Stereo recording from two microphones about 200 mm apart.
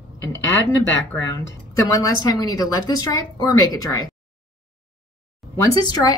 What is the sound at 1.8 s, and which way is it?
Speech, 15° left (ahead or behind).